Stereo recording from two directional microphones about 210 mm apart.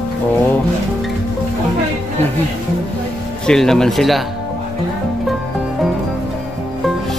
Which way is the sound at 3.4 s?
5° left (ahead or behind).